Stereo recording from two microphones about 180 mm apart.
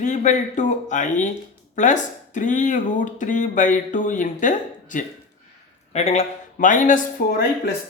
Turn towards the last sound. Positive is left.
turn(degrees=50)  # may be behind; listen again after turning